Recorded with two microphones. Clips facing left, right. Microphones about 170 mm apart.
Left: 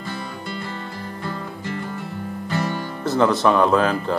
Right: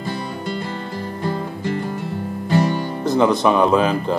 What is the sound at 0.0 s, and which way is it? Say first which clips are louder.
Music: right 5 dB; 35° right (ahead or behind).